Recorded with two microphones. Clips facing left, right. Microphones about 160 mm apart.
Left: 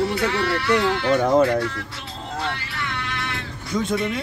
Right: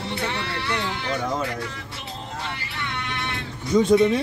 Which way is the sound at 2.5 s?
20° right (ahead or behind).